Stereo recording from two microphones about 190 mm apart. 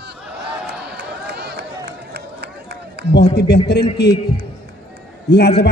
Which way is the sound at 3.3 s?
60° left (ahead or behind).